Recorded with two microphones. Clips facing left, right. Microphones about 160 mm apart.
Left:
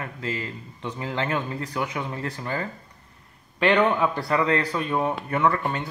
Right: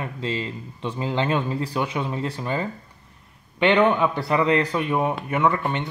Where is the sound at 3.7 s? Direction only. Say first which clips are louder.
Right 2 dB; centre (ahead or behind).